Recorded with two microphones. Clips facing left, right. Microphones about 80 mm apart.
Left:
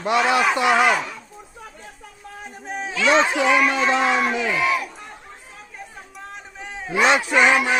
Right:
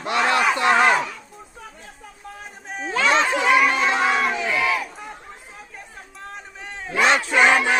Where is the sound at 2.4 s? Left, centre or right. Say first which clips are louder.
Left 3 dB; centre.